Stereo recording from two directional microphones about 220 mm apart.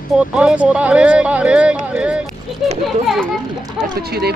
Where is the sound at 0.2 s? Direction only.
5° right (ahead or behind).